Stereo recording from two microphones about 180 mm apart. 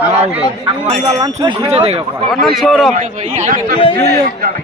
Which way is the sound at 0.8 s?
40° right (ahead or behind).